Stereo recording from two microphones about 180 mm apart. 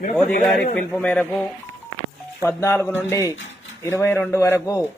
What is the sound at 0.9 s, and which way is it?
A man's voice, 10° left (ahead or behind).